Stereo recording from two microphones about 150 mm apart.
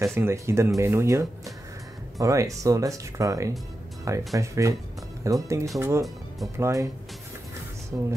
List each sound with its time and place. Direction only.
0.0 s speech: 20° right (ahead or behind)
7.9 s speech: 20° right (ahead or behind)